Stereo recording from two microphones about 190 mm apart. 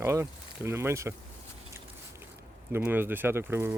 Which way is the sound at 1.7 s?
10° right (ahead or behind).